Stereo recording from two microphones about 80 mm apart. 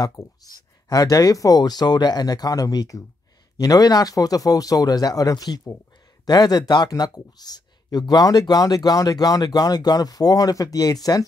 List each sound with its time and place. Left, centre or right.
0.4 s speech: left